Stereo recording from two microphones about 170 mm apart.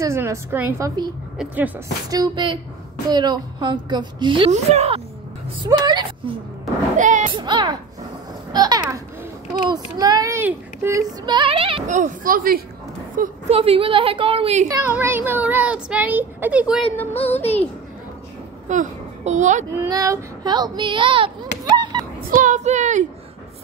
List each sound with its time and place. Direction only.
0.0 s speech: 15° right (ahead or behind)
2.0 s a woman's voice: 25° right (ahead or behind)
4.5 s a woman's voice: 40° right (ahead or behind)
5.6 s a woman's voice: 25° right (ahead or behind)
7.0 s speech: 45° right (ahead or behind)
7.2 s a woman's voice: 25° right (ahead or behind)
11.9 s speech: 50° right (ahead or behind)
13.5 s a woman's voice: 35° right (ahead or behind)
14.7 s speech: 15° right (ahead or behind)
16.9 s music: 10° left (ahead or behind)
18.7 s a child's voice: 45° right (ahead or behind)
19.8 s child singing: 20° right (ahead or behind)
22.3 s speech: 50° right (ahead or behind)